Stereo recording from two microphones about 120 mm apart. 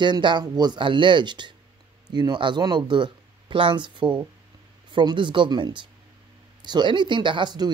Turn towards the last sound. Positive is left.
turn(degrees=-40)  # may be behind; listen again after turning